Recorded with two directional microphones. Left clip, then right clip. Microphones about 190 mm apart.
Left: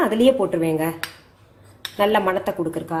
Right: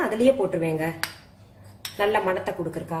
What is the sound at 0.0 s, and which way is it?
Speech, 35° left (ahead or behind).